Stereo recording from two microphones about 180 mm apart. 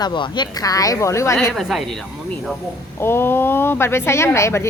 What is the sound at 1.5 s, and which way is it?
Speech, centre (ahead or behind).